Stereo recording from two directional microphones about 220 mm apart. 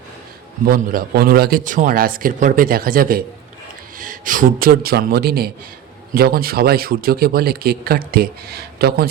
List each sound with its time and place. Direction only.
0.6 s a man's voice: 40° right (ahead or behind)